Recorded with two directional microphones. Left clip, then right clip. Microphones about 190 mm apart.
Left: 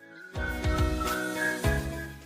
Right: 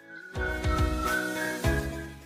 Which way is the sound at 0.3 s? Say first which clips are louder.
Right 1 dB; centre (ahead or behind).